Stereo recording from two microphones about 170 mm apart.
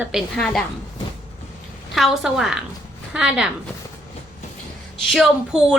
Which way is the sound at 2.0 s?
Centre (ahead or behind).